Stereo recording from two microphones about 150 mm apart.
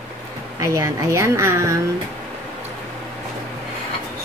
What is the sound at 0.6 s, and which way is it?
A woman's voice, 20° right (ahead or behind).